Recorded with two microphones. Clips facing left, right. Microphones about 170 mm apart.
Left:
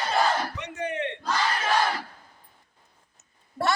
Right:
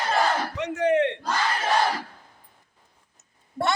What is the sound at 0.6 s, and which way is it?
Battle cry, 90° right.